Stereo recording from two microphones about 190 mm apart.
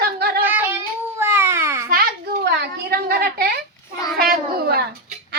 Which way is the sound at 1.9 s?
50° right (ahead or behind).